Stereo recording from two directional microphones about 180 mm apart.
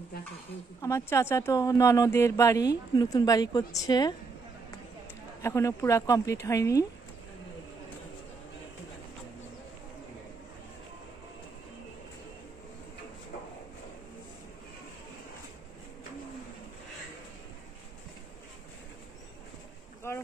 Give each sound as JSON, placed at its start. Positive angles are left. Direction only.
{"t": 0.7, "sound": "speech", "side_deg": 15}
{"t": 5.4, "sound": "speech", "side_deg": 15}
{"t": 20.1, "sound": "boat", "side_deg": 15}